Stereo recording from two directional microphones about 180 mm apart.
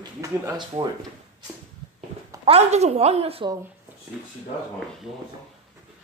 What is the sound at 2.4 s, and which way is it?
A woman's voice, 35° right (ahead or behind).